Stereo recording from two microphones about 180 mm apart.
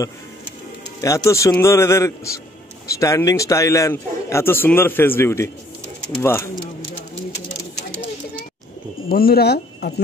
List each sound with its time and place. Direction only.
1.0 s a man's voice: 15° left (ahead or behind)
9.1 s speech: 60° left (ahead or behind)